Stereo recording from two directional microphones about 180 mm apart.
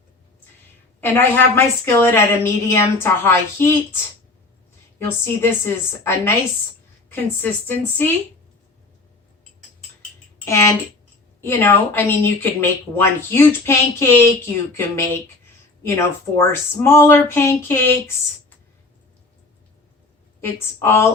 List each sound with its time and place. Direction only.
1.0 s speech: 10° left (ahead or behind)
4.9 s speech: 15° left (ahead or behind)
10.3 s speech: 15° left (ahead or behind)
16.5 s speech: 15° left (ahead or behind)
20.4 s speech: 15° left (ahead or behind)